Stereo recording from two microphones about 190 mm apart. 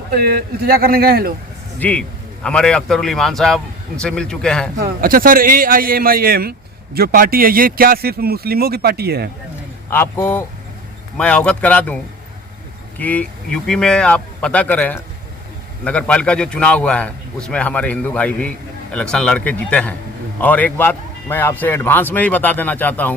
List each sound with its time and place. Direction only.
0.1 s a man's voice: 55° right (ahead or behind)
1.8 s a man's voice: 5° left (ahead or behind)
4.8 s a man's voice: 50° right (ahead or behind)
9.9 s a man's voice: 10° left (ahead or behind)
13.0 s a man's voice: 10° left (ahead or behind)